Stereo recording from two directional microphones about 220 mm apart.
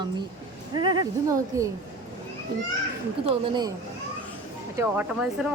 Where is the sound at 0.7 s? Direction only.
20° right (ahead or behind).